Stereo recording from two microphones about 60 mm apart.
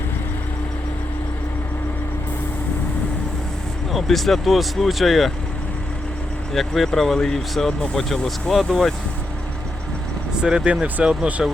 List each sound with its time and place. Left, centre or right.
3.9 s speech: centre
6.5 s speech: centre
10.3 s speech: centre